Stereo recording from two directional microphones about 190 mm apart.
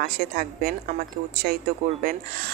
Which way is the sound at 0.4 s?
50° right (ahead or behind).